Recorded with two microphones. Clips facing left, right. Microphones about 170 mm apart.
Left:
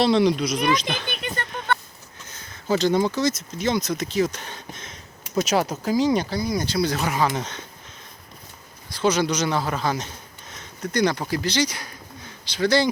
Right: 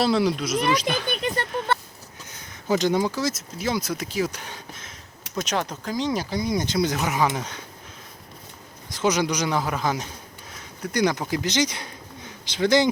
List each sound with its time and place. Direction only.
0.0 s speech: 5° right (ahead or behind)
2.2 s speech: 15° right (ahead or behind)
5.4 s speech: 5° left (ahead or behind)
6.3 s speech: 20° right (ahead or behind)
8.9 s speech: 15° right (ahead or behind)